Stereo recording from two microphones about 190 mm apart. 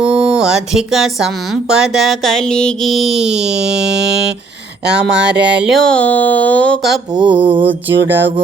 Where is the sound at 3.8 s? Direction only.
65° right (ahead or behind).